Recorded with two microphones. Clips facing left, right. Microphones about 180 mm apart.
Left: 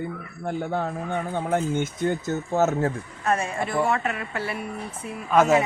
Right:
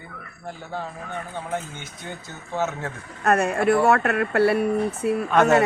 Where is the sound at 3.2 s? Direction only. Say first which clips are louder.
Right 6 dB; 70° right (ahead or behind).